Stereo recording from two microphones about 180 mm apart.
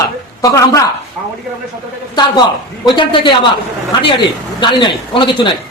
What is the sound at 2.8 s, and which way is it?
Speech, 25° left (ahead or behind).